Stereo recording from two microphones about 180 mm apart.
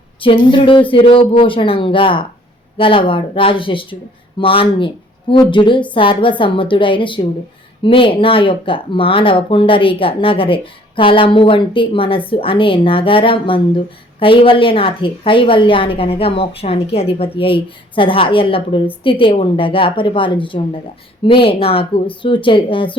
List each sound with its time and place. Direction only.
0.2 s a woman's voice: 30° left (ahead or behind)